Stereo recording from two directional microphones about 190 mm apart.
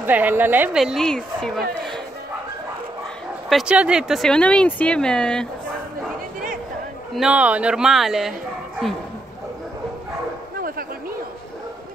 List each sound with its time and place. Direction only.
0.0 s a woman's voice: 10° right (ahead or behind)
3.4 s speech: 5° right (ahead or behind)
7.2 s speech: 5° right (ahead or behind)